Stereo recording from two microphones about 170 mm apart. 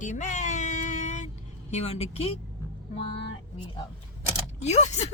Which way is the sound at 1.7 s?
35° left (ahead or behind).